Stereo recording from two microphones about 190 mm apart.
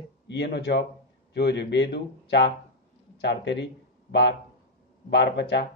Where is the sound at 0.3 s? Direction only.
65° left (ahead or behind).